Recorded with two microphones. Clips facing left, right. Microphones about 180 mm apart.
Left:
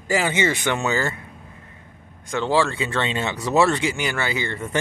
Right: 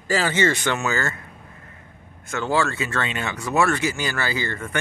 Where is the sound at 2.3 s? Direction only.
30° left (ahead or behind).